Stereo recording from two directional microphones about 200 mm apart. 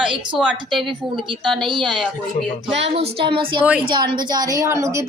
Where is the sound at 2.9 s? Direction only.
30° right (ahead or behind).